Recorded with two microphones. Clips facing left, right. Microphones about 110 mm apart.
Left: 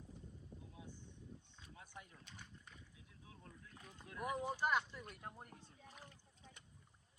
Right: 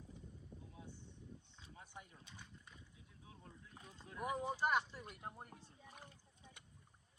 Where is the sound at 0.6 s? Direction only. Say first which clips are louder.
Even; 15° left (ahead or behind).